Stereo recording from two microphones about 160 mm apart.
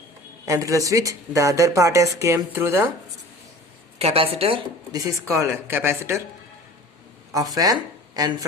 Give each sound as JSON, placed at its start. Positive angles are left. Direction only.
{"t": 0.4, "sound": "speech", "side_deg": -20}
{"t": 3.9, "sound": "a woman's voice", "side_deg": -40}
{"t": 4.9, "sound": "speech", "side_deg": -20}
{"t": 7.3, "sound": "speech", "side_deg": -25}